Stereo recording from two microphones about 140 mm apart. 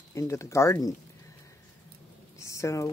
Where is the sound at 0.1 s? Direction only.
20° left (ahead or behind).